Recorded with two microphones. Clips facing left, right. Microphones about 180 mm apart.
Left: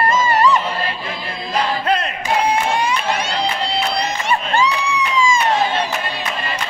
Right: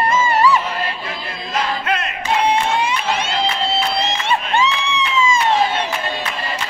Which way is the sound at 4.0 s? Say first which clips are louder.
Even; 25° right (ahead or behind).